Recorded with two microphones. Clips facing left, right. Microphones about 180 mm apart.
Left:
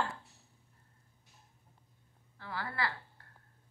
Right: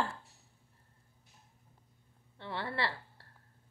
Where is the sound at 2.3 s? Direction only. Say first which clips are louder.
Right 2 dB; 25° right (ahead or behind).